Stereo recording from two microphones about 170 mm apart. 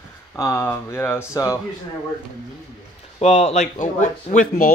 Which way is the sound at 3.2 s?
40° left (ahead or behind).